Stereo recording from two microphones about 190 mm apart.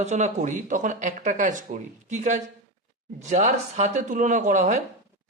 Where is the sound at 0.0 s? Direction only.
35° right (ahead or behind).